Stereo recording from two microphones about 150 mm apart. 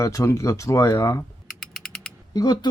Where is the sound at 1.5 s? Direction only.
Centre (ahead or behind).